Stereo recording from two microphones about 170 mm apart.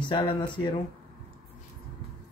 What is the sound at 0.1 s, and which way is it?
Speech, 30° left (ahead or behind).